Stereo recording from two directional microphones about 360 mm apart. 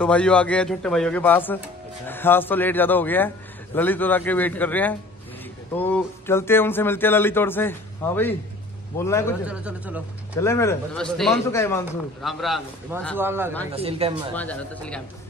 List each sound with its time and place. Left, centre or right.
0.0 s a man's voice: centre
9.5 s a man's voice: centre
10.3 s a man's voice: centre
14.3 s a man's voice: centre